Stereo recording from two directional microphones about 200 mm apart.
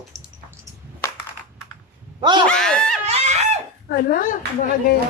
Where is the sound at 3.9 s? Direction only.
45° left (ahead or behind).